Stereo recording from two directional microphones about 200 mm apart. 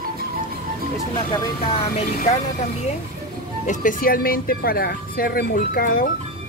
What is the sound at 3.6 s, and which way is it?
Speech, 40° left (ahead or behind).